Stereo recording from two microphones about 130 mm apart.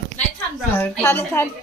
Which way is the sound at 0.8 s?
15° left (ahead or behind).